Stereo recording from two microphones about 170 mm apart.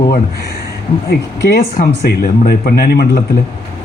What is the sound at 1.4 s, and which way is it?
A man's voice, 60° left (ahead or behind).